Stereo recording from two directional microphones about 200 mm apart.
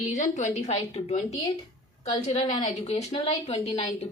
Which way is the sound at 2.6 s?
35° left (ahead or behind).